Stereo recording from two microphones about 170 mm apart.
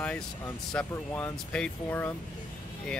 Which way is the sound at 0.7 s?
10° left (ahead or behind).